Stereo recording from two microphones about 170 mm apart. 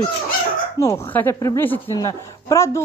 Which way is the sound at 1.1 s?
15° left (ahead or behind).